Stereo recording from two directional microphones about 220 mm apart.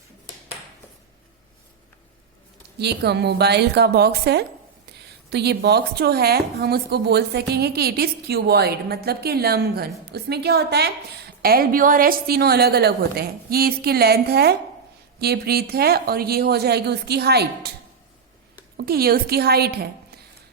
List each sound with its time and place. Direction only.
2.7 s speech: 50° right (ahead or behind)
18.8 s speech: 45° right (ahead or behind)